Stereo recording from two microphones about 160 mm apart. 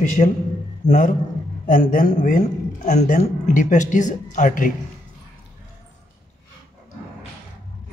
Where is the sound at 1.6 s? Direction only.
60° left (ahead or behind).